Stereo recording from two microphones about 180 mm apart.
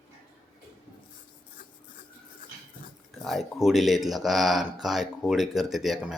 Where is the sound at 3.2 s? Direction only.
Centre (ahead or behind).